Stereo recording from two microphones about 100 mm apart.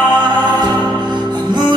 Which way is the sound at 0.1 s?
45° right (ahead or behind).